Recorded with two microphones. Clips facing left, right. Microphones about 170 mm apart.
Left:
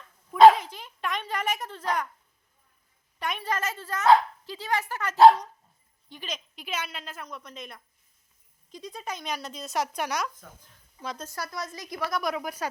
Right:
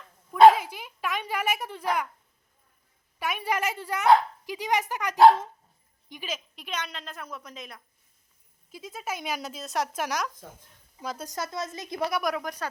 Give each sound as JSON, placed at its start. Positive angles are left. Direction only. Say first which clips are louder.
{"t": 0.5, "sound": "a sound", "louder": "right 2 dB", "side_deg": -10}
{"t": 3.2, "sound": "speech", "louder": "right 2 dB", "side_deg": -10}
{"t": 6.7, "sound": "speech", "louder": "left 1 dB", "side_deg": 5}
{"t": 11.3, "sound": "a woman's voice", "louder": "right 3 dB", "side_deg": -20}
{"t": 12.1, "sound": "speech", "louder": "right 1 dB", "side_deg": 0}